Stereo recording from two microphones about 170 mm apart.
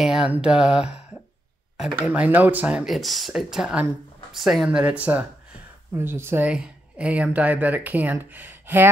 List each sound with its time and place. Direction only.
0.0 s speech: 5° right (ahead or behind)